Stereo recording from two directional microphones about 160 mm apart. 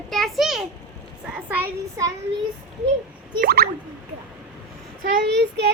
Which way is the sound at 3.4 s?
75° right (ahead or behind).